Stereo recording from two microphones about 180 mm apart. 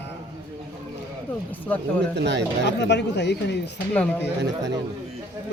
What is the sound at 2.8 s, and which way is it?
Speech, 75° left (ahead or behind).